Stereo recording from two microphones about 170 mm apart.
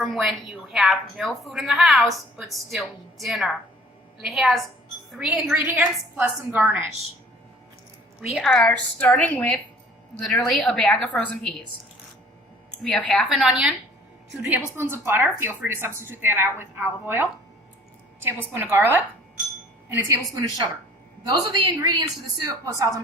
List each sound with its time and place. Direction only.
0.0 s a woman's voice: centre (ahead or behind)
8.2 s a woman's voice: centre (ahead or behind)
12.8 s a woman's voice: 5° left (ahead or behind)
14.8 s a woman's voice: 15° right (ahead or behind)
18.5 s a woman's voice: 10° right (ahead or behind)
21.2 s a woman's voice: 25° right (ahead or behind)